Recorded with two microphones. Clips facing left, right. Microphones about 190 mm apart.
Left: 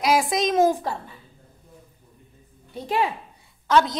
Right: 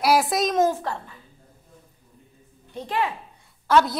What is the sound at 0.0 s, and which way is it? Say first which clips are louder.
Speech: right 1 dB; centre (ahead or behind).